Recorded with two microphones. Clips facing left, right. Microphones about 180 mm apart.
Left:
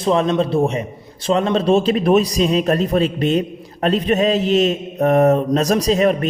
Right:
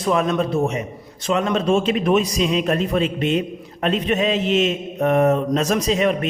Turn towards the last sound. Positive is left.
turn(degrees=40)  # may be behind; listen again after turning